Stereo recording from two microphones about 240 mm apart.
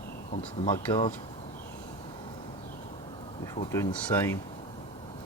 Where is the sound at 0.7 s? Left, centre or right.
Centre.